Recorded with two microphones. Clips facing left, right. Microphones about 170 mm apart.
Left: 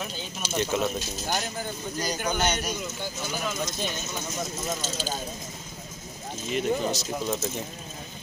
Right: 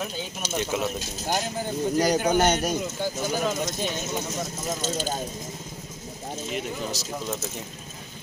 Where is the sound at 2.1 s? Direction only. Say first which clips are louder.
Right 6 dB; 40° right (ahead or behind).